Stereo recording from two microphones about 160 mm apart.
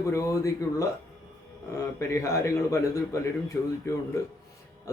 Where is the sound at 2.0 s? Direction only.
20° left (ahead or behind).